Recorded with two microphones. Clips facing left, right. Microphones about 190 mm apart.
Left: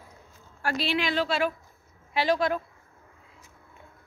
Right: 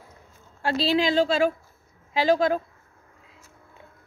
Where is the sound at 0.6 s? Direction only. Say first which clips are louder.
Right 5 dB; 25° right (ahead or behind).